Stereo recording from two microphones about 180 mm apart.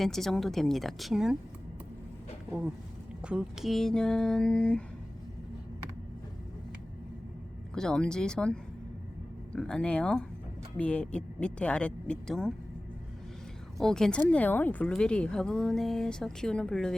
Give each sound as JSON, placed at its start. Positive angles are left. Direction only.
{"t": 0.0, "sound": "speech", "side_deg": 0}
{"t": 2.5, "sound": "speech", "side_deg": -5}
{"t": 7.8, "sound": "speech", "side_deg": 5}
{"t": 13.7, "sound": "speech", "side_deg": 5}